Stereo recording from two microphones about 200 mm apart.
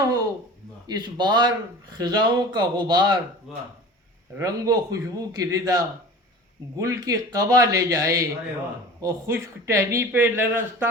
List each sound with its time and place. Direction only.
0.9 s speech: 20° right (ahead or behind)
3.5 s speech: centre (ahead or behind)
4.4 s speech: 15° right (ahead or behind)